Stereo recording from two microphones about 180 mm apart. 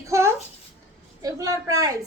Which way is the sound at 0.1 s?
15° right (ahead or behind).